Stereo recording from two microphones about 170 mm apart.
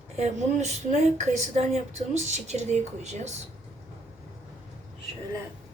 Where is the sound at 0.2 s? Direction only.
45° right (ahead or behind).